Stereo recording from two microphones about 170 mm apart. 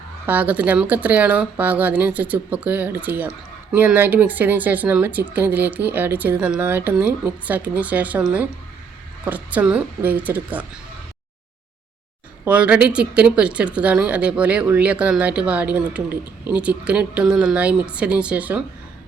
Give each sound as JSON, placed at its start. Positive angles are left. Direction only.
{"t": 0.3, "sound": "speech", "side_deg": -10}
{"t": 12.5, "sound": "speech", "side_deg": -5}